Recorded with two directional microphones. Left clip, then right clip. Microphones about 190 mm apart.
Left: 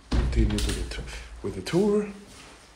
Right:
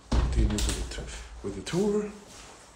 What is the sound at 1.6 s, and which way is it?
Speech, 5° right (ahead or behind).